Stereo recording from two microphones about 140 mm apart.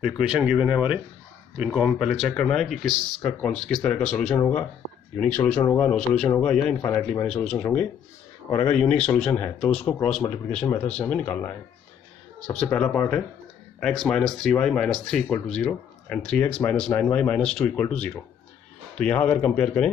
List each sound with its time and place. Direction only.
0.0 s speech: 5° right (ahead or behind)
6.8 s speech: 25° left (ahead or behind)
7.2 s speech: 5° left (ahead or behind)
10.9 s speech: 5° left (ahead or behind)